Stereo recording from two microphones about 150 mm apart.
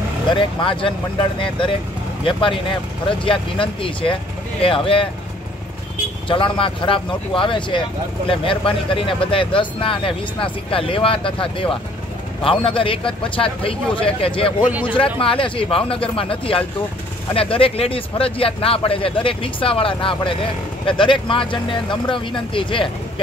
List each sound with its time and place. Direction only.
0.3 s speech: 35° left (ahead or behind)
6.2 s speech: 35° left (ahead or behind)
14.6 s speech: 10° right (ahead or behind)
15.0 s speech: 35° left (ahead or behind)